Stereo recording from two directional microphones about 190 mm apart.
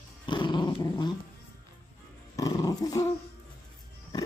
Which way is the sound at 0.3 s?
25° left (ahead or behind).